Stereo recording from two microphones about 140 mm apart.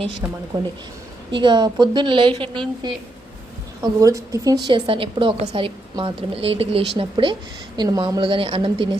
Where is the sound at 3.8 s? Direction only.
25° right (ahead or behind).